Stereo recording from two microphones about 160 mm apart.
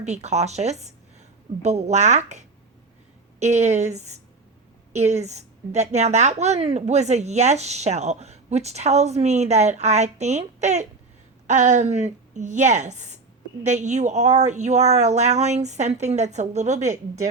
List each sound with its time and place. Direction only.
0.0 s a woman's voice: 45° right (ahead or behind)
3.4 s a woman's voice: 45° right (ahead or behind)